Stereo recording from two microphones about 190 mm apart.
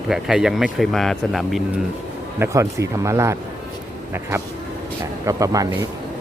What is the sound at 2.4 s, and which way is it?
Speech, 15° right (ahead or behind).